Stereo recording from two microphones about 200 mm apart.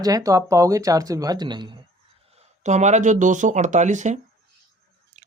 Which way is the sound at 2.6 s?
35° right (ahead or behind).